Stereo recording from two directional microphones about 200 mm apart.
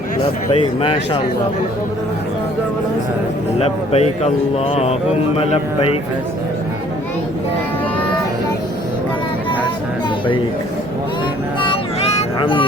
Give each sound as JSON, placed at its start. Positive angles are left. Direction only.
{"t": 0.5, "sound": "speech", "side_deg": 25}
{"t": 3.6, "sound": "speech", "side_deg": 30}
{"t": 12.4, "sound": "speech", "side_deg": 25}